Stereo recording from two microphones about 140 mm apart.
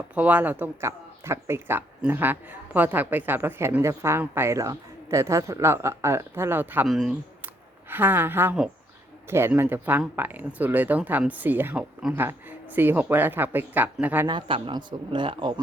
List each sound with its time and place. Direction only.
0.1 s speech: 10° right (ahead or behind)
6.8 s speech: 5° right (ahead or behind)
14.3 s speech: 35° right (ahead or behind)